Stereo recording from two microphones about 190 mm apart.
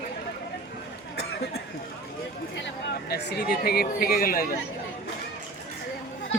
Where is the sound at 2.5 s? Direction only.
65° left (ahead or behind).